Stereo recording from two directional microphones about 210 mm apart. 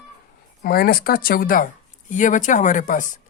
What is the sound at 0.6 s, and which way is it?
Speech, 45° left (ahead or behind).